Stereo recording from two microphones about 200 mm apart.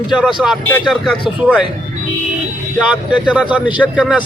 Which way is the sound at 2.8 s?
5° right (ahead or behind).